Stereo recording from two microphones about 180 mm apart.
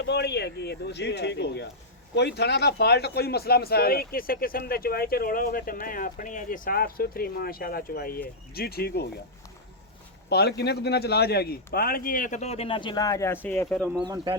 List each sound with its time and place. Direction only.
0.0 s speech: 70° left (ahead or behind)
10.2 s a man's voice: 65° left (ahead or behind); by 14.0 s 5° left (ahead or behind)
14.0 s speech: 25° right (ahead or behind)